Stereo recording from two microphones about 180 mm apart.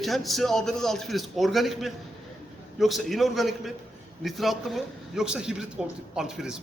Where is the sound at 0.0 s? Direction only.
Centre (ahead or behind).